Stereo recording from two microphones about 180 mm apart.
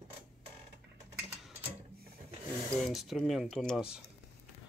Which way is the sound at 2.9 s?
Centre (ahead or behind).